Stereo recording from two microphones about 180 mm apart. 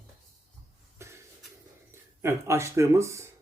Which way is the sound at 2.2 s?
15° right (ahead or behind).